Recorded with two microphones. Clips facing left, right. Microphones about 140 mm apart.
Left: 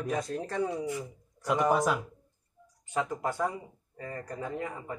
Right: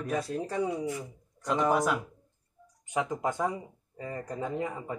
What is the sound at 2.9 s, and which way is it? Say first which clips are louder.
Speech: right 1 dB; 15° right (ahead or behind).